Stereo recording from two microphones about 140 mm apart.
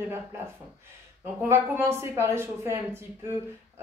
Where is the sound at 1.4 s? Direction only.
15° right (ahead or behind).